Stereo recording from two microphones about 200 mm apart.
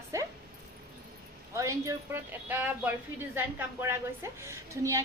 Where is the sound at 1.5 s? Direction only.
15° right (ahead or behind).